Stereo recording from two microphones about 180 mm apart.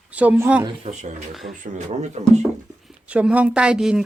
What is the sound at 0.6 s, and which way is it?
Speech, 40° right (ahead or behind).